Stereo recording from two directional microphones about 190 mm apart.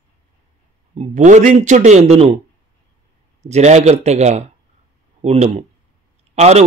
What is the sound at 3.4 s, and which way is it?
Speech, 35° right (ahead or behind).